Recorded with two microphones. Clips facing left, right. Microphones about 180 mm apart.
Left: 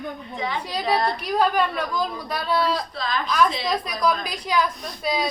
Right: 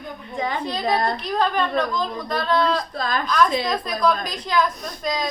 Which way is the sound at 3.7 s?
10° left (ahead or behind).